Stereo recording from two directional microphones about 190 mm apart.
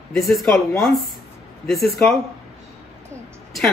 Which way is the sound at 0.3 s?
Centre (ahead or behind).